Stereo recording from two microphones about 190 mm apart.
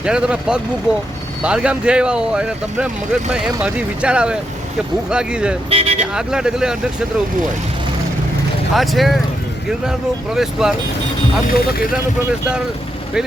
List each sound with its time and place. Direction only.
0.0 s speech: 5° right (ahead or behind)
5.7 s vehicle: 35° right (ahead or behind)
6.1 s speech: 5° right (ahead or behind)
8.7 s speech: centre (ahead or behind)
10.3 s speech: 5° right (ahead or behind)